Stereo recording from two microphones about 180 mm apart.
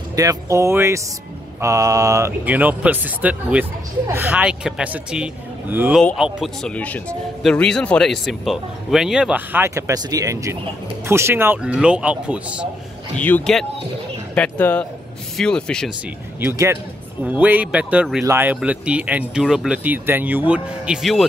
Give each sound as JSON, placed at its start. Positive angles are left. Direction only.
{"t": 0.1, "sound": "speech", "side_deg": -20}
{"t": 13.1, "sound": "speech", "side_deg": 5}
{"t": 16.3, "sound": "speech", "side_deg": -15}